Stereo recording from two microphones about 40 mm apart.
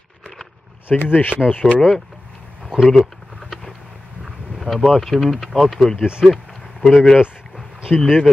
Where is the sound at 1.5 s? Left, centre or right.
Left.